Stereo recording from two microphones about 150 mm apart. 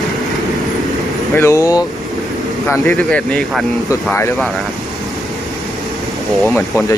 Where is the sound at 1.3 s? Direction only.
20° left (ahead or behind).